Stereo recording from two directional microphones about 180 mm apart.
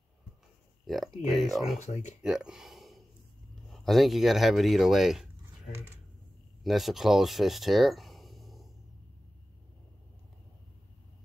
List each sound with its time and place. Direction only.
0.8 s speech: centre (ahead or behind)
1.9 s speech: 40° left (ahead or behind)
2.2 s speech: 5° right (ahead or behind)
6.6 s speech: centre (ahead or behind)